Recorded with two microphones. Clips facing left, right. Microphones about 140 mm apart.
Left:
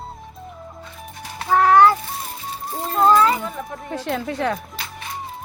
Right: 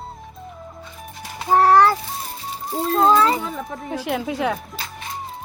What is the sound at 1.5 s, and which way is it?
Music, 40° right (ahead or behind).